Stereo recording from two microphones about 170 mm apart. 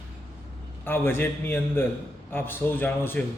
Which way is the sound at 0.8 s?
10° left (ahead or behind).